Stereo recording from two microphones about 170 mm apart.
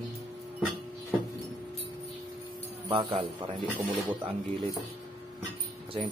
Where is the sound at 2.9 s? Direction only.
35° right (ahead or behind).